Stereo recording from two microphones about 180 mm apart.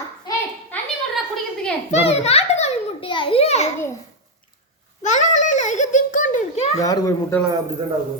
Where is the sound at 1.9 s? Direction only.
35° left (ahead or behind).